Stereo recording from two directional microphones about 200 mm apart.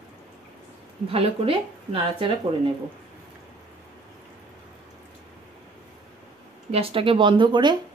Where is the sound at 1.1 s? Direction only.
30° right (ahead or behind).